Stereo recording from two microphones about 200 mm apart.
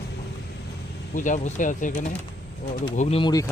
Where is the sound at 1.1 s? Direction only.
40° left (ahead or behind).